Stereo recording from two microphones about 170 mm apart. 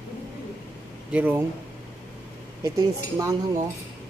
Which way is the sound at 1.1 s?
10° right (ahead or behind).